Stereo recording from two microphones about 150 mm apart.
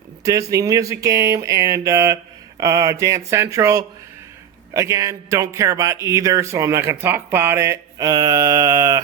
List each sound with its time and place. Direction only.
0.3 s a man's voice: 20° right (ahead or behind)